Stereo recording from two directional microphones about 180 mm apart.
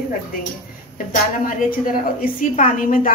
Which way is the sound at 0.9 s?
50° left (ahead or behind).